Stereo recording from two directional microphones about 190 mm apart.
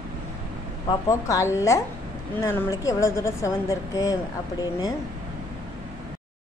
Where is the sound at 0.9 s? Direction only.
15° left (ahead or behind).